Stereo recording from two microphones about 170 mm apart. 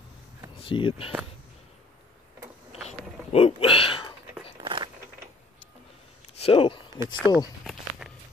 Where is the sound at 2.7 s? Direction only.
40° left (ahead or behind).